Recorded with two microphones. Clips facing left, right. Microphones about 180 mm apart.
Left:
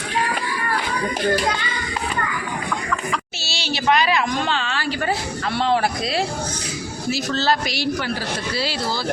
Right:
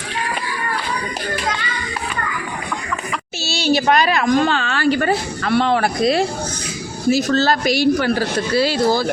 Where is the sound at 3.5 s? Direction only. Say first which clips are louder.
Right 5 dB; 45° right (ahead or behind).